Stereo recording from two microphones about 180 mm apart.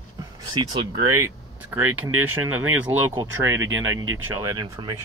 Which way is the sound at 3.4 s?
90° right.